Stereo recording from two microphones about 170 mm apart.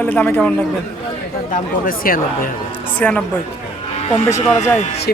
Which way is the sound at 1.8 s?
55° left (ahead or behind).